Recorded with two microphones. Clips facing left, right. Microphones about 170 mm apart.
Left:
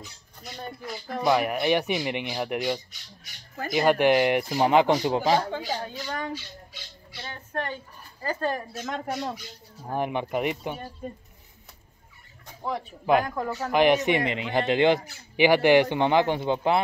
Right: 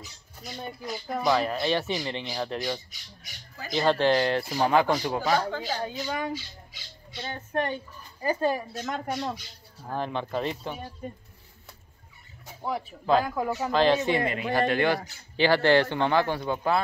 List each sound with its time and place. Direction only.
0.4 s speech: 5° right (ahead or behind)
1.2 s a man's voice: 15° left (ahead or behind)
5.9 s a woman's voice: 15° right (ahead or behind)
9.1 s a man's voice: 10° left (ahead or behind)
12.4 s a sound: 5° right (ahead or behind)
13.2 s a woman's voice: 5° right (ahead or behind)
13.7 s speech: 15° left (ahead or behind)